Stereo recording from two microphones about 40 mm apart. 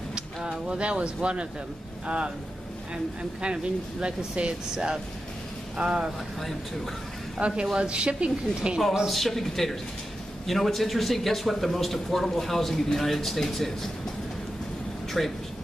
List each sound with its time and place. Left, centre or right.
0.1 s a woman's voice: right
4.0 s a woman's voice: right
4.7 s a woman's voice: centre
7.3 s a woman's voice: right
9.0 s a man's voice: centre
15.2 s a man's voice: centre